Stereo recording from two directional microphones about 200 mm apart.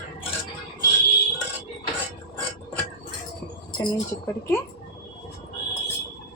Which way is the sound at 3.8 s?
15° left (ahead or behind).